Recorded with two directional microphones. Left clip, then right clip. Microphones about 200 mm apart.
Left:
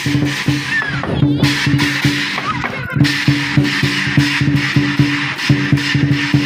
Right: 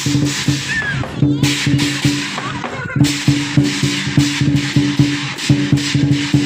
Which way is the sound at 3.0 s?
15° left (ahead or behind).